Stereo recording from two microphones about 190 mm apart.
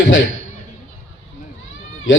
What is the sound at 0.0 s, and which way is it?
Speech, 80° left.